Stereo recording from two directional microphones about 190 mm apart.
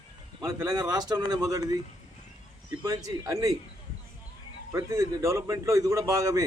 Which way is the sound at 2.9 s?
15° right (ahead or behind).